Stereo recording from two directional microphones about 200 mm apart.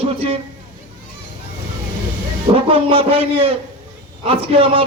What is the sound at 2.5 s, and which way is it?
A man's voice, 25° right (ahead or behind).